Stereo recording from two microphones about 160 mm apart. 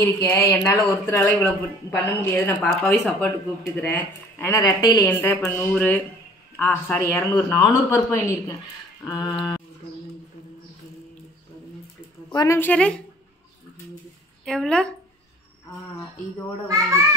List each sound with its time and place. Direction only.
0.0 s speech: 15° left (ahead or behind)
5.0 s speech: 10° left (ahead or behind)
12.4 s speech: 15° left (ahead or behind)
14.4 s a woman's voice: 5° left (ahead or behind)
16.6 s a child's voice: 20° right (ahead or behind)